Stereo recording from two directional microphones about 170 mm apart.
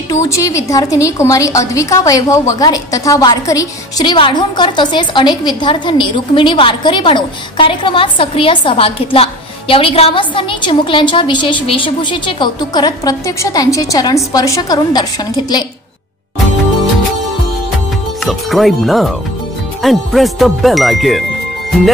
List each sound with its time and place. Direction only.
0.1 s a woman's voice: 20° left (ahead or behind)
18.2 s speech: centre (ahead or behind)